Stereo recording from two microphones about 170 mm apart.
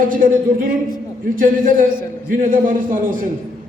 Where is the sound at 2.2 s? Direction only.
50° right (ahead or behind).